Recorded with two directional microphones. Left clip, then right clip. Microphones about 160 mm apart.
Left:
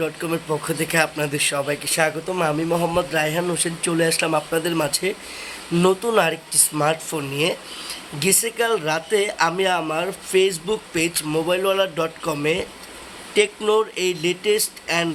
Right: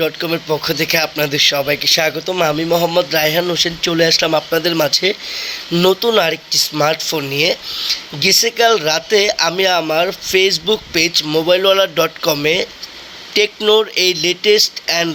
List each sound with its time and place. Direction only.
0.0 s speech: 20° right (ahead or behind)